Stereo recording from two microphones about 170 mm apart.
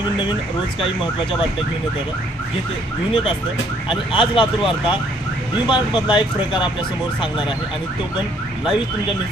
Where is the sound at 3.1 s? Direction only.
30° left (ahead or behind).